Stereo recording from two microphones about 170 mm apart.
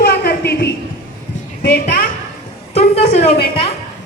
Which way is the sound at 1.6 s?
75° left (ahead or behind).